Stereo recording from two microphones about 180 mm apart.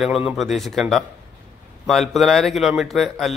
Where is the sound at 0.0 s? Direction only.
Centre (ahead or behind).